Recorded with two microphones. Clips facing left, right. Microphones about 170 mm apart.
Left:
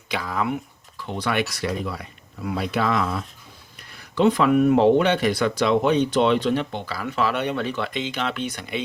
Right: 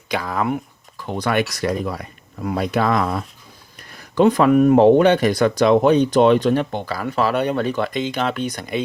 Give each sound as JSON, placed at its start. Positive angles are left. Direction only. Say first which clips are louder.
{"t": 0.1, "sound": "speech", "louder": "right 4 dB", "side_deg": -50}